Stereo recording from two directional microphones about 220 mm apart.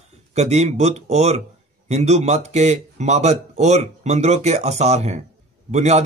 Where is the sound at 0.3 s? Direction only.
30° right (ahead or behind).